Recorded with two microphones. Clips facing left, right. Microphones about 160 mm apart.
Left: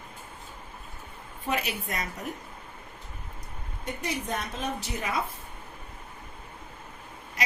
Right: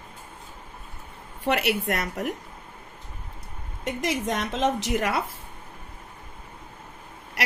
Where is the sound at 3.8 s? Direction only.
90° right.